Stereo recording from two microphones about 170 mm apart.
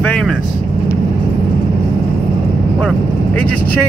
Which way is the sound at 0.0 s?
5° left (ahead or behind).